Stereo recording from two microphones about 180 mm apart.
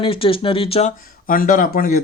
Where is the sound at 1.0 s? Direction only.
50° left (ahead or behind).